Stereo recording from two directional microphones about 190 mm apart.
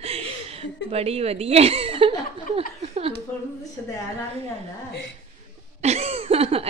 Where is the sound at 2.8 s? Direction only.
30° right (ahead or behind).